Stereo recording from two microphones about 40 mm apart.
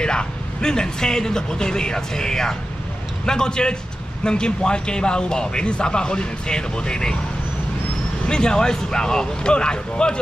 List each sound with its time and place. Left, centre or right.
0.0 s a man's voice: left
8.3 s a man's voice: centre